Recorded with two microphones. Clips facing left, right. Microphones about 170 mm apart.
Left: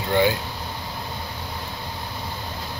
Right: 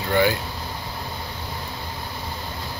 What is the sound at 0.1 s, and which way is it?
Speech, 20° left (ahead or behind).